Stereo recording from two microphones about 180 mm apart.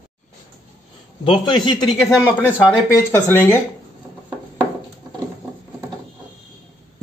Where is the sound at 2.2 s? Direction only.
15° left (ahead or behind).